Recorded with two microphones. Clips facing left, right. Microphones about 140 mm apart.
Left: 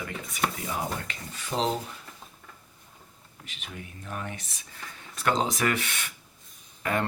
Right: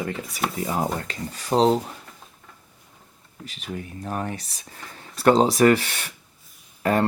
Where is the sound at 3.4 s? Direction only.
35° right (ahead or behind).